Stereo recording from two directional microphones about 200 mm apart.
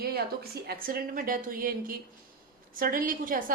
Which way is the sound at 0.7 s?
50° right (ahead or behind).